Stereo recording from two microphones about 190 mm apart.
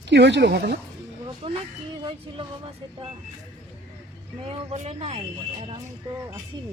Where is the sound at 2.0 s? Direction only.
25° right (ahead or behind).